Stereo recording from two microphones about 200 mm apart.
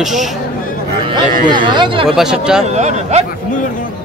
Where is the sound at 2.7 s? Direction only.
35° right (ahead or behind).